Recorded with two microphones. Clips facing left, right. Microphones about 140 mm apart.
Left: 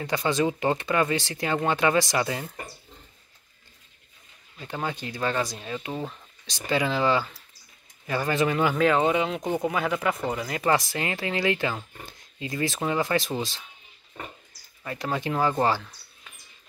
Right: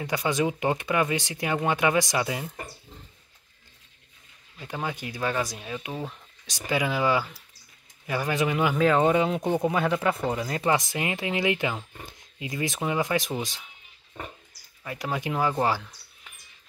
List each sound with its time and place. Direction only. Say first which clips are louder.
0.0 s speech: left 1 dB; 10° right (ahead or behind)
4.6 s speech: left 1 dB; 10° right (ahead or behind)
9.4 s speech: right 2 dB; 20° right (ahead or behind)
14.9 s speech: left 1 dB; 10° right (ahead or behind)